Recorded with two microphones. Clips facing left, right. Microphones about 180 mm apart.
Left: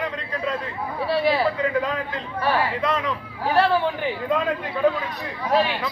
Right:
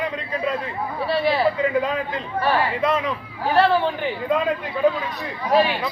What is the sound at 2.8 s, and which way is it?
Speech, 15° right (ahead or behind).